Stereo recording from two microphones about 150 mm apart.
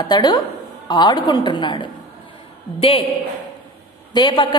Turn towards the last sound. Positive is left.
turn(degrees=30)  # may be behind; listen again after turning